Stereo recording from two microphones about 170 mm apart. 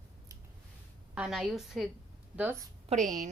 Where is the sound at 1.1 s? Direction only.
5° right (ahead or behind).